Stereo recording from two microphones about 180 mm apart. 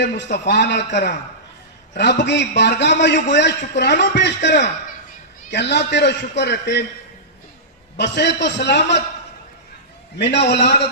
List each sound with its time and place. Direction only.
0.0 s speech: 75° left (ahead or behind)
1.9 s speech: 75° left (ahead or behind)
7.9 s speech: 70° left (ahead or behind)
10.2 s speech: 70° left (ahead or behind)